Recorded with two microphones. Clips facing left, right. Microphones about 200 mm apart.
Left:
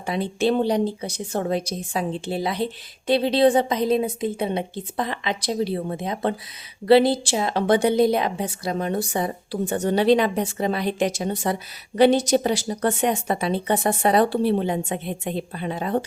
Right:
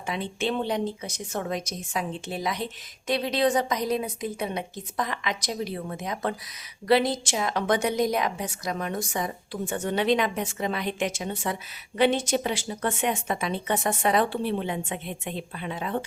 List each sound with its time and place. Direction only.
0.0 s a woman's voice: 35° left (ahead or behind)